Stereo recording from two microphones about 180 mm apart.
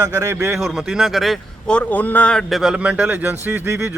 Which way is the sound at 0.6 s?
Centre (ahead or behind).